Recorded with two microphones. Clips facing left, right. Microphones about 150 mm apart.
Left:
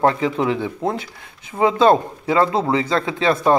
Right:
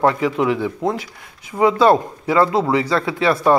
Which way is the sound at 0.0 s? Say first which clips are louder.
Right 1 dB; 30° left (ahead or behind).